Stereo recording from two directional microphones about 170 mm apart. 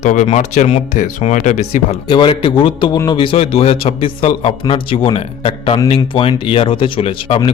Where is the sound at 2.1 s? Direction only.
30° left (ahead or behind).